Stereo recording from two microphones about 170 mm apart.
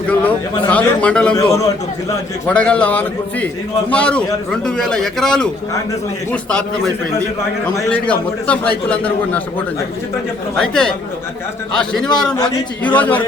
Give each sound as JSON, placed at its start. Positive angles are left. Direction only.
{"t": 0.1, "sound": "a man's voice", "side_deg": 10}
{"t": 1.4, "sound": "a man's voice", "side_deg": 20}
{"t": 2.5, "sound": "a man's voice", "side_deg": 5}
{"t": 7.8, "sound": "a man's voice", "side_deg": 10}
{"t": 10.5, "sound": "a man's voice", "side_deg": 5}